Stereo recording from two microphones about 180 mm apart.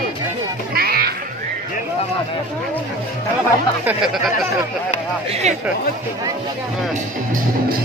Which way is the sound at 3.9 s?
5° right (ahead or behind).